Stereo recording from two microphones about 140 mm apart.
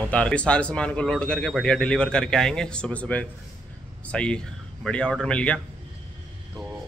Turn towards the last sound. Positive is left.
turn(degrees=10)  # may be behind; listen again after turning